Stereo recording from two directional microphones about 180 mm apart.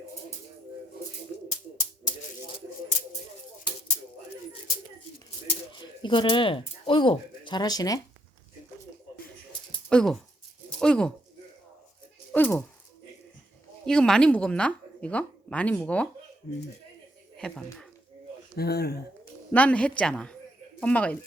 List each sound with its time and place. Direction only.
1.5 s bird: 25° left (ahead or behind)
5.5 s speech: 25° left (ahead or behind)
9.9 s speech: 5° left (ahead or behind)
12.3 s speech: 10° left (ahead or behind)
13.8 s speech: 5° left (ahead or behind)
17.3 s speech: 5° left (ahead or behind)
18.5 s speech: 60° left (ahead or behind)
19.5 s speech: 5° left (ahead or behind)